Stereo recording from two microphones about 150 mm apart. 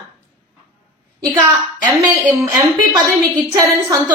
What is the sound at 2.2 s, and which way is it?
A woman's voice, 20° right (ahead or behind).